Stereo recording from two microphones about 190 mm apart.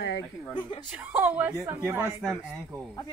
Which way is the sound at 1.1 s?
10° right (ahead or behind).